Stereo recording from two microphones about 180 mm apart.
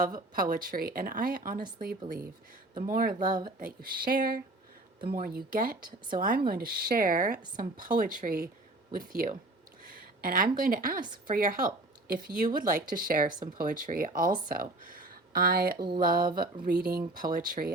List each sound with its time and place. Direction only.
0.0 s speech: 50° right (ahead or behind)
2.8 s speech: 55° right (ahead or behind)
9.8 s a sound: 55° right (ahead or behind)
10.6 s speech: 50° right (ahead or behind)
17.2 s speech: 50° right (ahead or behind)